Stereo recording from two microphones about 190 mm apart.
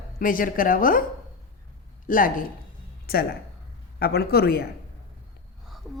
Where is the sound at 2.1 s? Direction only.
45° left (ahead or behind).